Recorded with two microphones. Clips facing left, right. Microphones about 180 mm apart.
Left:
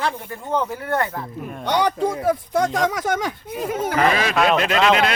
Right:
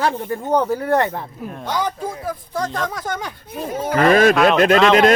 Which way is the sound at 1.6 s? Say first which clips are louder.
Left 4 dB; 70° left (ahead or behind).